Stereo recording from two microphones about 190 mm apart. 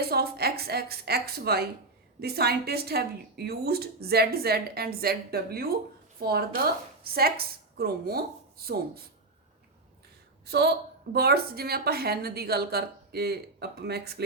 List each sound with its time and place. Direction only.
0.1 s a woman's voice: 55° right (ahead or behind)
10.4 s a woman's voice: 55° right (ahead or behind)